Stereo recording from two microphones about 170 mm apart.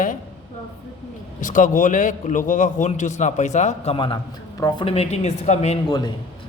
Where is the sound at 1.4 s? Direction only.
50° left (ahead or behind).